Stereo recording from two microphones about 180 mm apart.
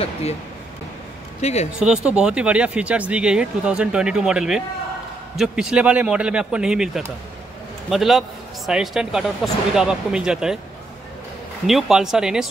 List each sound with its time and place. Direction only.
0.0 s speech: 35° left (ahead or behind)
1.4 s speech: 40° left (ahead or behind)
1.8 s speech: 5° right (ahead or behind)
11.6 s speech: centre (ahead or behind)